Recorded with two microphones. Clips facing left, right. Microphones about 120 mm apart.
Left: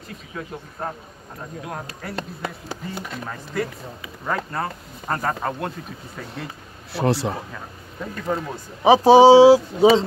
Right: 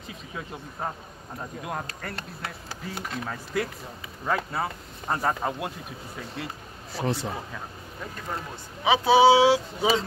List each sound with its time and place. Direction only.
1.9 s speech: 5° left (ahead or behind)
3.5 s speech: 5° right (ahead or behind)
6.9 s speech: 70° left (ahead or behind)
8.8 s speech: 35° left (ahead or behind)